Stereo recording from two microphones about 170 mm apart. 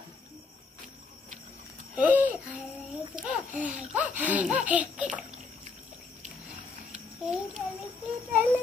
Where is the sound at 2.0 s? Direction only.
10° right (ahead or behind).